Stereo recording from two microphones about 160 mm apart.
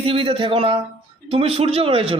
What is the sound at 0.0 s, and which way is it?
A man's voice, 35° right (ahead or behind).